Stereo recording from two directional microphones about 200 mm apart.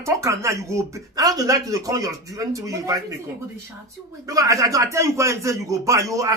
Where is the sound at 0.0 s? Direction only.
15° right (ahead or behind).